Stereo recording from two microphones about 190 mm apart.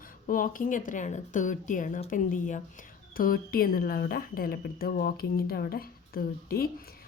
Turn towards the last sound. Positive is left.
turn(degrees=50)  # may be behind; listen again after turning